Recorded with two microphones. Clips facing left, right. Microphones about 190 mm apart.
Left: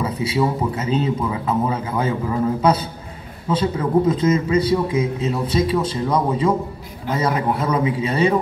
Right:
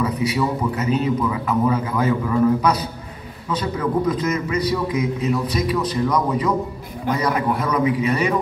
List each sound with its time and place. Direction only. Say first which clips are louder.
0.0 s a man's voice: even; 25° left (ahead or behind)